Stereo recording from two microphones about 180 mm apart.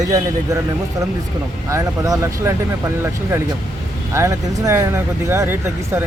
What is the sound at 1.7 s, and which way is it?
Speech, 20° right (ahead or behind).